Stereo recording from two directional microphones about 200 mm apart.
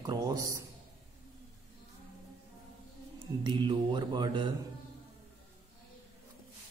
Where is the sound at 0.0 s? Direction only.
20° right (ahead or behind).